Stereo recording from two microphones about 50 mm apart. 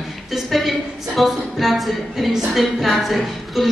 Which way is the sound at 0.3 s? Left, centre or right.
Centre.